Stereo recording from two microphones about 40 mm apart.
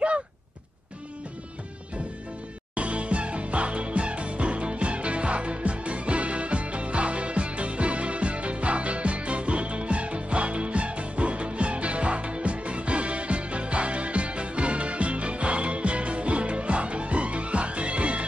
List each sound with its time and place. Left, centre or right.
2.7 s music: right